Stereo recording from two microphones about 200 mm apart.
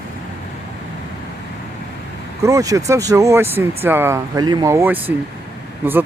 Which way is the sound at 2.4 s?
15° right (ahead or behind).